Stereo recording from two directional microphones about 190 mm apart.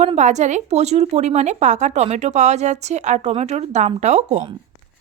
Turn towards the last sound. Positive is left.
turn(degrees=-35)  # may be behind; listen again after turning